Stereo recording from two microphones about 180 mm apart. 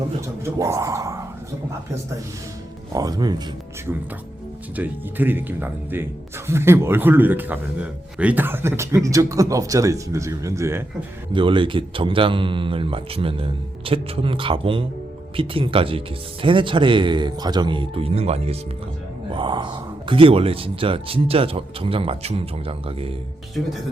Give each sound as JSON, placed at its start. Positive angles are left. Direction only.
{"t": 0.2, "sound": "a sound", "side_deg": -15}
{"t": 2.9, "sound": "speech", "side_deg": -20}
{"t": 4.7, "sound": "a man's voice", "side_deg": -10}
{"t": 11.3, "sound": "speech", "side_deg": -30}